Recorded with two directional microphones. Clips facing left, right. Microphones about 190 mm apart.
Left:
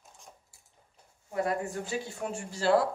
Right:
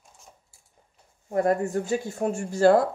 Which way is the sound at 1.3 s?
45° right (ahead or behind).